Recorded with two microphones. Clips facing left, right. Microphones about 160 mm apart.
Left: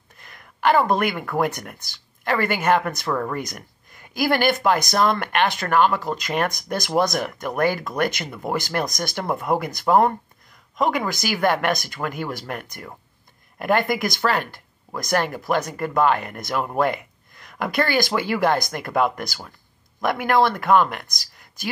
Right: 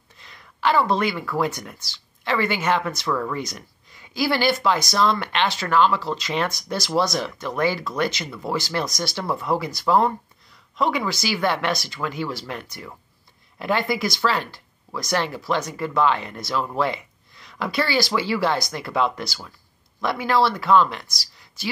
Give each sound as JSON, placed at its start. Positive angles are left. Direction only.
{"t": 0.2, "sound": "speech", "side_deg": 55}